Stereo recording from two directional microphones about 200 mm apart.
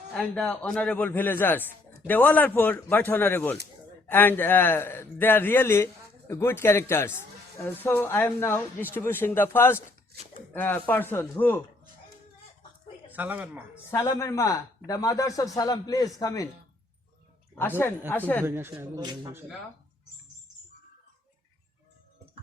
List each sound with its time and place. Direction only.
0.1 s a man's voice: 5° left (ahead or behind)
13.1 s speech: 10° right (ahead or behind)
13.9 s a man's voice: 15° left (ahead or behind)
17.5 s a woman's voice: 10° left (ahead or behind)
18.4 s speech: 10° right (ahead or behind)
18.9 s speech: 20° right (ahead or behind)